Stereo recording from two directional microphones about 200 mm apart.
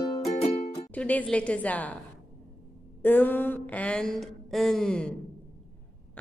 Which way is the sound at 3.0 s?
10° left (ahead or behind).